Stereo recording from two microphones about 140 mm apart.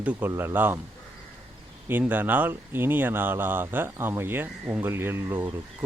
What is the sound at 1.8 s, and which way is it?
Speech, 15° right (ahead or behind).